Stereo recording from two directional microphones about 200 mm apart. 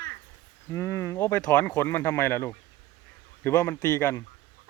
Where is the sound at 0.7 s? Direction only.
15° left (ahead or behind).